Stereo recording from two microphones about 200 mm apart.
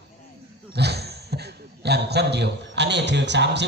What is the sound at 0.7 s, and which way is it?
A man's voice, 55° right (ahead or behind).